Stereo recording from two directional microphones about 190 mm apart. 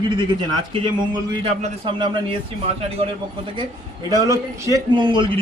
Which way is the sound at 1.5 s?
30° right (ahead or behind).